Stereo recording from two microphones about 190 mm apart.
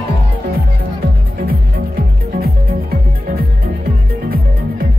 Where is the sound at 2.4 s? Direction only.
50° right (ahead or behind).